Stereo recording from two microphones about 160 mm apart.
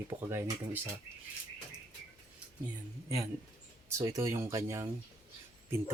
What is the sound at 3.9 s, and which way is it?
Speech, 20° right (ahead or behind).